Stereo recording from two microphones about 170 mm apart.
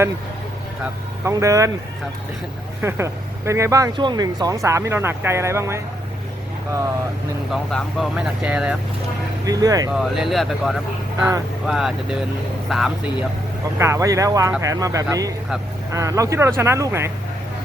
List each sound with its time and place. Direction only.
1.2 s speech: 20° right (ahead or behind)
2.8 s speech: 15° right (ahead or behind)
7.5 s speech: centre (ahead or behind)
9.5 s speech: 20° right (ahead or behind)
9.9 s speech: centre (ahead or behind)
13.7 s speech: 15° right (ahead or behind)